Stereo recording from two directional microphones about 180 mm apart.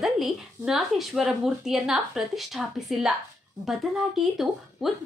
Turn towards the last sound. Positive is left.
turn(degrees=0)  # may be behind; listen again after turning